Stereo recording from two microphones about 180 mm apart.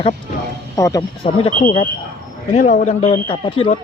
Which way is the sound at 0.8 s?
20° left (ahead or behind).